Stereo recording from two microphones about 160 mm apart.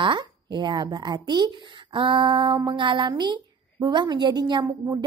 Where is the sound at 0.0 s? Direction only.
30° right (ahead or behind).